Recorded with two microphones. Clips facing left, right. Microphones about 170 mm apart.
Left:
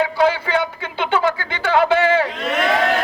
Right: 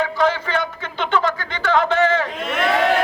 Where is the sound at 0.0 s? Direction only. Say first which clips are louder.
Left 2 dB; 10° left (ahead or behind).